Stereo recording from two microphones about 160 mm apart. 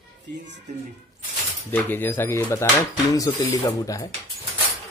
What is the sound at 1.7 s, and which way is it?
Speech, 10° left (ahead or behind).